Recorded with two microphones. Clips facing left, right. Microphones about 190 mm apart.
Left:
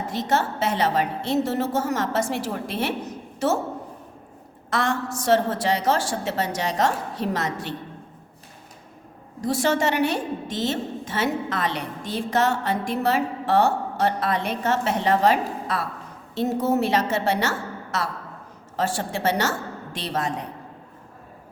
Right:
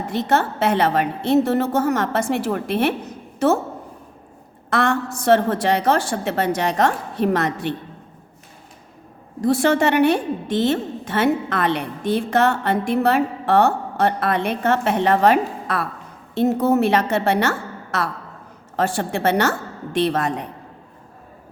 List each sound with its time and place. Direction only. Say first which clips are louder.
0.1 s a woman's voice: right 4 dB; 60° right (ahead or behind)
4.7 s a woman's voice: right 4 dB; 60° right (ahead or behind)
9.4 s a woman's voice: right 5 dB; 60° right (ahead or behind)